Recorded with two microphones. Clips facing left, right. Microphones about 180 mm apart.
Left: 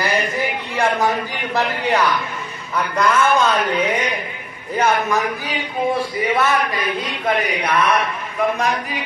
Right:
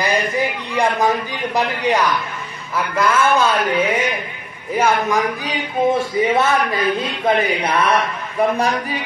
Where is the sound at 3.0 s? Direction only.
5° right (ahead or behind).